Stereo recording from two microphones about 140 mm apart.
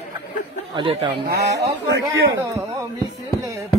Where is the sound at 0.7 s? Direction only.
35° right (ahead or behind).